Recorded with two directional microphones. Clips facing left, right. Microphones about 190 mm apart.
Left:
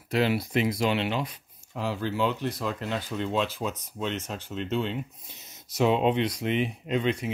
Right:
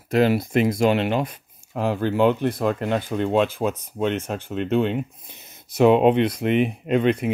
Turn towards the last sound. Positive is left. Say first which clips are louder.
# right 7 dB
turn(degrees=-60)  # may be behind; listen again after turning